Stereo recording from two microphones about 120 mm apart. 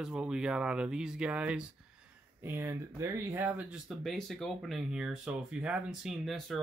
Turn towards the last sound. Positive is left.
turn(degrees=0)  # may be behind; listen again after turning